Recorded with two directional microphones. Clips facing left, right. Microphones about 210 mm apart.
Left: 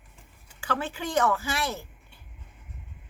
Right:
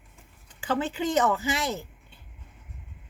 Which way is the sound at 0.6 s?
20° right (ahead or behind).